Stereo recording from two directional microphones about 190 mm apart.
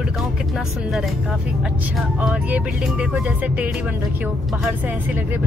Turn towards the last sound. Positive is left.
turn(degrees=-10)  # may be behind; listen again after turning